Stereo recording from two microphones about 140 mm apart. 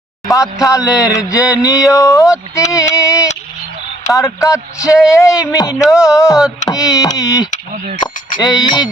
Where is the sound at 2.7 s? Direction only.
20° left (ahead or behind).